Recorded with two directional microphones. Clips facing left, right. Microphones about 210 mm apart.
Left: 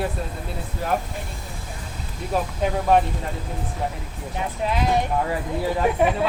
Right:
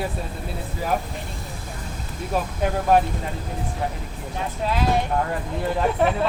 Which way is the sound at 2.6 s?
Centre (ahead or behind).